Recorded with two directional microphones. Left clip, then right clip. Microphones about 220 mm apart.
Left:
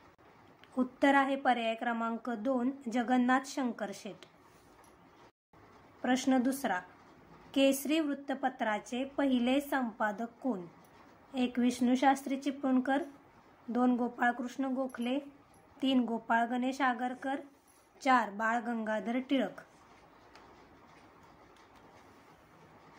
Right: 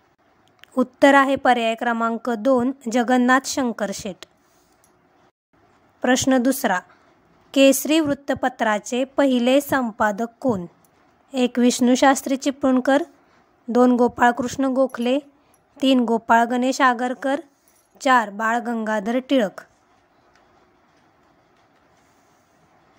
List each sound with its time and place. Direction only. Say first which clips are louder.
0.6 s a woman's voice: right 14 dB; 45° right (ahead or behind)
6.0 s a woman's voice: right 12 dB; 45° right (ahead or behind)